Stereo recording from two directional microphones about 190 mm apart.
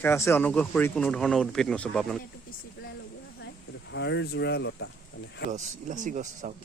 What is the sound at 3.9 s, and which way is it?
Speech, 65° left (ahead or behind).